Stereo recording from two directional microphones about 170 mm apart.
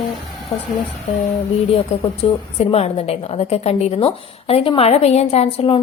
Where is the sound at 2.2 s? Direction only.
35° left (ahead or behind).